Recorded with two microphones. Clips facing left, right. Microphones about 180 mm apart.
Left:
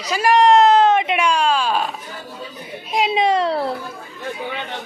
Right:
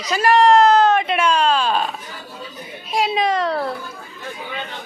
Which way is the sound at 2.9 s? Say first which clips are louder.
Left 2 dB; 20° left (ahead or behind).